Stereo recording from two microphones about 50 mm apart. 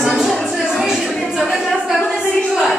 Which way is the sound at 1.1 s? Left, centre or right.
Centre.